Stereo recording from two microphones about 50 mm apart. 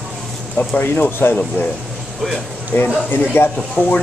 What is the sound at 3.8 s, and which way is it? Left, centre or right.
Speech, left.